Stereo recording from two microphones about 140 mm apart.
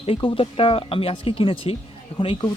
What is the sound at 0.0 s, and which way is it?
Speech, 40° left (ahead or behind).